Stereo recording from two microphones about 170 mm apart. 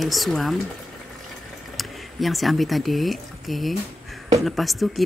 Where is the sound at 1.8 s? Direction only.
Centre (ahead or behind).